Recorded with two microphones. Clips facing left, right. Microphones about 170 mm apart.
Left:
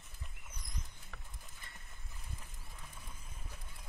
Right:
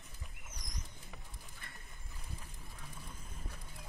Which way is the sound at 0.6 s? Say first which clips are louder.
Even; 40° right (ahead or behind).